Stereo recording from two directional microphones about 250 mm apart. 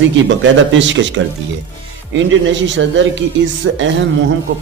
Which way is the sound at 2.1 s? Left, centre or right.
Right.